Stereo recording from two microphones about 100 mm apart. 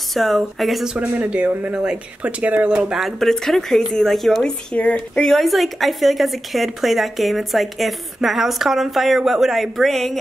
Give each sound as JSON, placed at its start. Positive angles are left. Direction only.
{"t": 0.1, "sound": "speech", "side_deg": 0}
{"t": 0.9, "sound": "speech", "side_deg": -15}